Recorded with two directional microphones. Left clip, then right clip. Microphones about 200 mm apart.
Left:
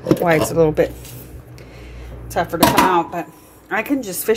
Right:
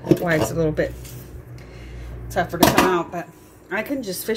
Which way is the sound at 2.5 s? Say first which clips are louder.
Left 3 dB; 45° left (ahead or behind).